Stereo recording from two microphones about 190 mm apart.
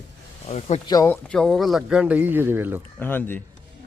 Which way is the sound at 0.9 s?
15° left (ahead or behind).